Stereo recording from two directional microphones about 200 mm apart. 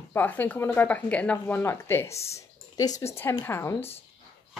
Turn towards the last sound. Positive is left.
turn(degrees=10)  # may be behind; listen again after turning